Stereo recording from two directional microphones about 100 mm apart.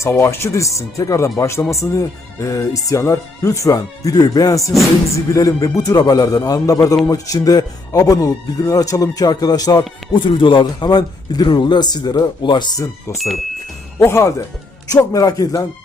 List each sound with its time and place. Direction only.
0.0 s speech: 25° left (ahead or behind)
4.6 s speech: centre (ahead or behind)
5.1 s speech: 30° left (ahead or behind)
10.2 s a man's voice: 50° left (ahead or behind)
14.0 s speech: 30° left (ahead or behind)